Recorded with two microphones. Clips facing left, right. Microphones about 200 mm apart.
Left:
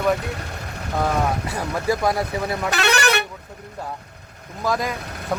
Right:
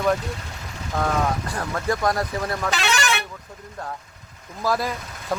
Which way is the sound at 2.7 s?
60° left (ahead or behind).